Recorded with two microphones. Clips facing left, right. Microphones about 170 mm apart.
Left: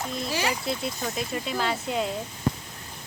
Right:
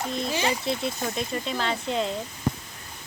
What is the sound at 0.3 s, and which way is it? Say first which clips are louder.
Speech: right 1 dB; 25° right (ahead or behind).